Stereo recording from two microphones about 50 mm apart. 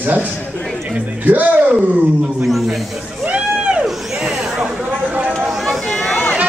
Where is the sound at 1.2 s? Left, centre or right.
Right.